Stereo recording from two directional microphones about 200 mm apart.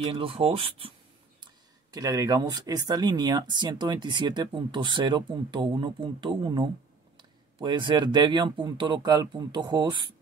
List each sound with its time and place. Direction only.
0.1 s speech: 25° right (ahead or behind)